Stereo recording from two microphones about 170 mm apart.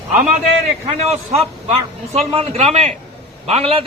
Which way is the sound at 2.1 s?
35° right (ahead or behind).